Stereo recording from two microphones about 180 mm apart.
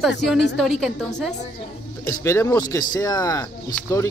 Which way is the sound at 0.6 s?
Centre (ahead or behind).